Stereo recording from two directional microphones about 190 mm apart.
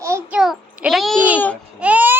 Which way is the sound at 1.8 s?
10° right (ahead or behind).